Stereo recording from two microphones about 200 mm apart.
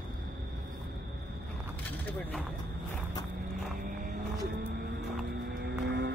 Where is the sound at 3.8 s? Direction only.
45° right (ahead or behind).